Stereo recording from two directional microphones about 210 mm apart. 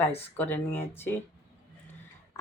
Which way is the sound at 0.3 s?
10° left (ahead or behind).